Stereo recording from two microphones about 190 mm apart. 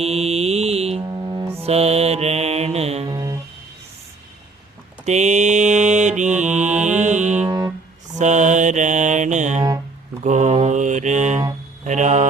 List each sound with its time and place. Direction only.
0.0 s mantra: 35° right (ahead or behind)
1.0 s music: 20° right (ahead or behind)
1.6 s music: 35° right (ahead or behind)
5.0 s mantra: 35° right (ahead or behind)
6.6 s music: 40° right (ahead or behind)
8.2 s mantra: 40° right (ahead or behind)
11.9 s speech: 40° right (ahead or behind)